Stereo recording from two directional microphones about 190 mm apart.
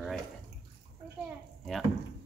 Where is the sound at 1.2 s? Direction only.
Centre (ahead or behind).